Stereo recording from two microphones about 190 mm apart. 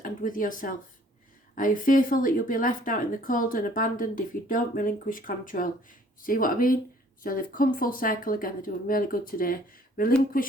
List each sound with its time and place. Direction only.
0.0 s speech: 45° left (ahead or behind)